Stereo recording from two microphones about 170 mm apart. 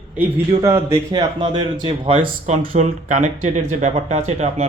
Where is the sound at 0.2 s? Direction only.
15° right (ahead or behind).